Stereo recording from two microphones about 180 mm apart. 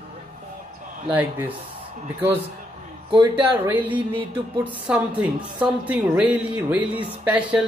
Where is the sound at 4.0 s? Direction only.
25° right (ahead or behind).